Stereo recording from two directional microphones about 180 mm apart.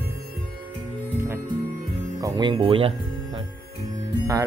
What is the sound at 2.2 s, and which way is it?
Speech, 25° right (ahead or behind).